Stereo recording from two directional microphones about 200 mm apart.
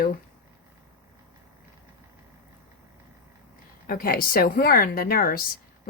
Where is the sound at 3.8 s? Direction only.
45° left (ahead or behind).